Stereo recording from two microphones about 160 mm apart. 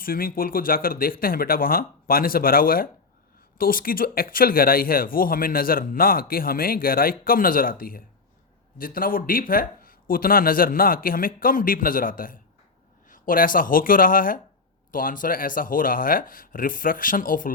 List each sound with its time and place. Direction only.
0.0 s speech: 65° left (ahead or behind)